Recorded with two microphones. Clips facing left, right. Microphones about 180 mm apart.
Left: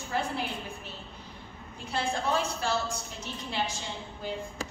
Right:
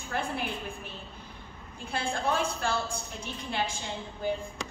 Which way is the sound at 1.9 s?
55° right (ahead or behind).